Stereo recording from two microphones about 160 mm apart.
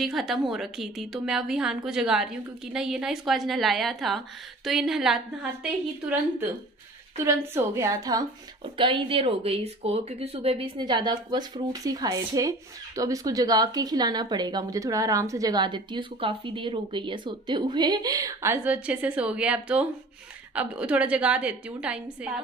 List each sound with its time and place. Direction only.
0.0 s a woman's voice: centre (ahead or behind)
7.2 s speech: 20° right (ahead or behind); by 10.7 s 40° right (ahead or behind)
10.8 s a woman's voice: 25° right (ahead or behind); by 22.3 s 5° right (ahead or behind)